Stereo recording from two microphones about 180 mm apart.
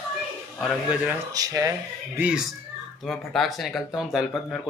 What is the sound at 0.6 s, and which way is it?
Speech, 5° right (ahead or behind).